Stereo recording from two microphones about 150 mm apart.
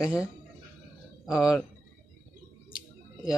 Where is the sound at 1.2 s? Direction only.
5° right (ahead or behind).